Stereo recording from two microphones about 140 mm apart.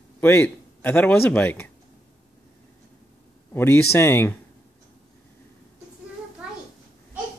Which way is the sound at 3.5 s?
15° left (ahead or behind).